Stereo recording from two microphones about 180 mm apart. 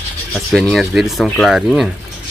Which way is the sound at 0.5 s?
Centre (ahead or behind).